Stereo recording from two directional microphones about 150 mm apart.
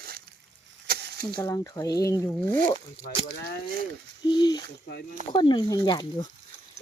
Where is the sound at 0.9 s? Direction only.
90° right.